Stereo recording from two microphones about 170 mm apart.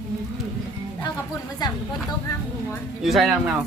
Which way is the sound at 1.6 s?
25° left (ahead or behind).